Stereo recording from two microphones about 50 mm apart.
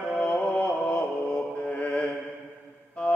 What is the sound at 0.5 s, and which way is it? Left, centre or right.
Music, left.